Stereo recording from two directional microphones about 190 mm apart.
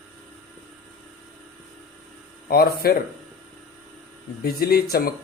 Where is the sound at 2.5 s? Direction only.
55° left (ahead or behind).